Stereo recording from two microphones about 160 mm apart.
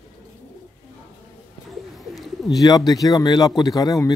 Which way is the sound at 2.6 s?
25° left (ahead or behind).